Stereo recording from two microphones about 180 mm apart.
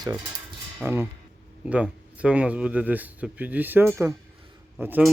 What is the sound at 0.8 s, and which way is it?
Speech, 10° right (ahead or behind).